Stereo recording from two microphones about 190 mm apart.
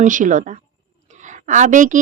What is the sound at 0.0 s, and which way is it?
A woman's voice, 40° right (ahead or behind).